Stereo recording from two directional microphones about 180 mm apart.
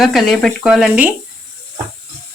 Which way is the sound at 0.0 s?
Centre (ahead or behind).